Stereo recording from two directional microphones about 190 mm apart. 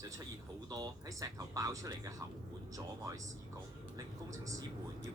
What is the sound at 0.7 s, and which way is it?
Speech, 20° right (ahead or behind).